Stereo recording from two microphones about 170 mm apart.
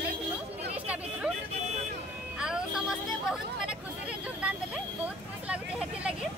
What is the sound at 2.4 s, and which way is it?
Music, 5° right (ahead or behind).